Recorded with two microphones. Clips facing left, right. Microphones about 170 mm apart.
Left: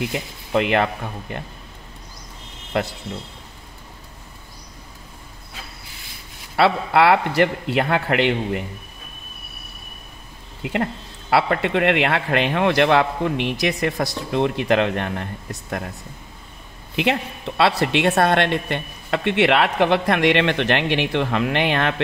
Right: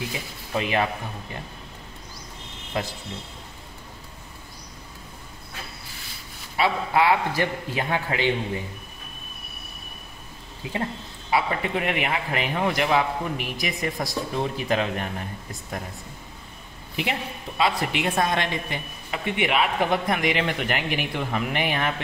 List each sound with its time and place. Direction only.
0.5 s speech: 70° left (ahead or behind)
2.7 s speech: 65° left (ahead or behind)
6.5 s a woman's voice: 75° left (ahead or behind)
10.6 s a woman's voice: 70° left (ahead or behind)
16.9 s a woman's voice: 80° left